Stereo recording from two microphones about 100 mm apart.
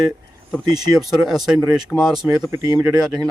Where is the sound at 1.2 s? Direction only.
5° right (ahead or behind).